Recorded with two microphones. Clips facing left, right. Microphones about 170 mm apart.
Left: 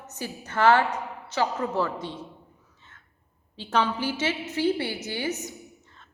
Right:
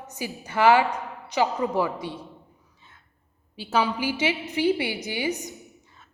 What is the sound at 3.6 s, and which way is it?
A woman's voice, 10° right (ahead or behind).